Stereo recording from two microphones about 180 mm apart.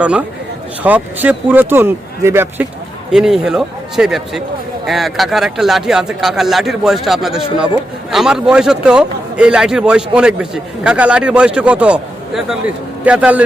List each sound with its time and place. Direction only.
0.0 s a man's voice: 5° right (ahead or behind)
3.1 s a man's voice: 5° right (ahead or behind)